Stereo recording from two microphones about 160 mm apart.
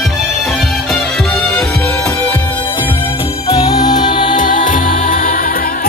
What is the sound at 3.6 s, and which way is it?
Music, 25° left (ahead or behind).